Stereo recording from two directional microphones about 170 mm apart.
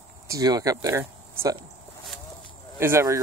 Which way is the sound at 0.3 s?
20° right (ahead or behind).